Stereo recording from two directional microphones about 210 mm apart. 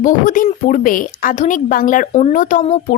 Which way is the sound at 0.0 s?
40° left (ahead or behind).